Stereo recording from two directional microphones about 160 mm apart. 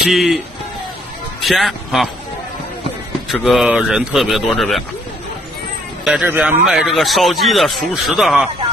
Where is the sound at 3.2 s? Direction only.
Centre (ahead or behind).